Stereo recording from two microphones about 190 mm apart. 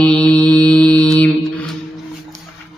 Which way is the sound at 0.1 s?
5° left (ahead or behind).